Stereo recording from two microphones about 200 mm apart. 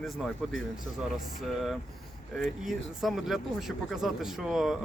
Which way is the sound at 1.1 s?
Centre (ahead or behind).